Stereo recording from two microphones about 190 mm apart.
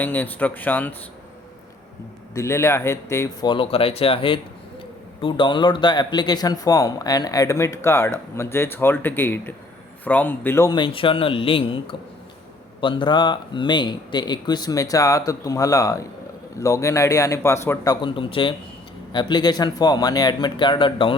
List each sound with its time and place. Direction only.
0.0 s a man's voice: 10° left (ahead or behind)
2.3 s a man's voice: 15° left (ahead or behind)
18.0 s speech: 25° left (ahead or behind)